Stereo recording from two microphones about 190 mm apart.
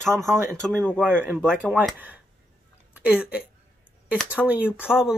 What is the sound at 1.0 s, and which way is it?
Speech, 10° right (ahead or behind).